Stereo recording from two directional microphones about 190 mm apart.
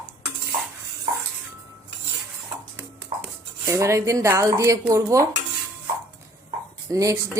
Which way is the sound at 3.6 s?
15° right (ahead or behind).